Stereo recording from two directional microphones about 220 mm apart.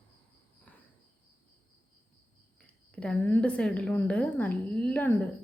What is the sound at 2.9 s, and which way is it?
A woman's voice, 5° left (ahead or behind).